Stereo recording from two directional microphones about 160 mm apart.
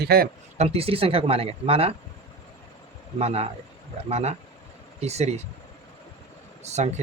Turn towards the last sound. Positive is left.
turn(degrees=-45)  # may be behind; listen again after turning